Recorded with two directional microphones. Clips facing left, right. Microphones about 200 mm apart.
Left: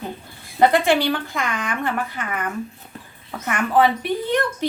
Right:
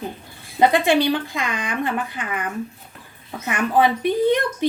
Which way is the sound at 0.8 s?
15° right (ahead or behind).